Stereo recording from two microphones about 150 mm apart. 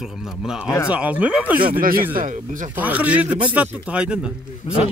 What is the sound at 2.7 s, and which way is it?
Speech, 10° right (ahead or behind).